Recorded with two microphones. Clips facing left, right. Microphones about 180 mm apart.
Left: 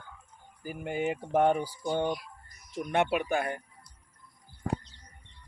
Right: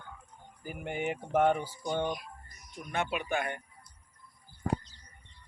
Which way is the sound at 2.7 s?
65° left (ahead or behind).